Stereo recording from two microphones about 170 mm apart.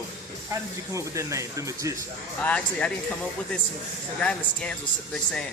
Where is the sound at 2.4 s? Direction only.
5° left (ahead or behind).